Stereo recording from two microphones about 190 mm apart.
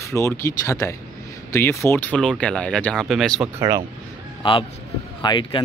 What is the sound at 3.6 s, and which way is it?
Speech, 15° right (ahead or behind).